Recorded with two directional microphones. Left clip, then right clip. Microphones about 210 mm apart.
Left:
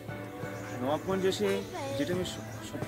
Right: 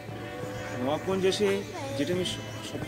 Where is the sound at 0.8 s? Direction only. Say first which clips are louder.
Right 2 dB; 5° left (ahead or behind).